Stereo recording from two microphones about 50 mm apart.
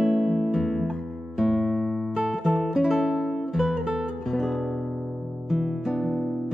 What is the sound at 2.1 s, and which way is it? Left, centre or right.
Music, centre.